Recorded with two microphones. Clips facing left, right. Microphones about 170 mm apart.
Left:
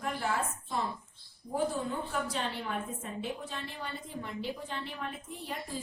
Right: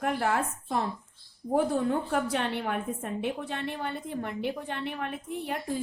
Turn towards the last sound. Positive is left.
turn(degrees=-60)  # may be behind; listen again after turning